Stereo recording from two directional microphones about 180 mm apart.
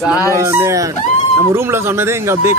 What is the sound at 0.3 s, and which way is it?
Speech, 15° right (ahead or behind).